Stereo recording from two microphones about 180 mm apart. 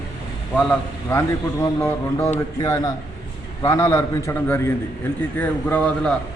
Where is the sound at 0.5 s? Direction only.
10° left (ahead or behind).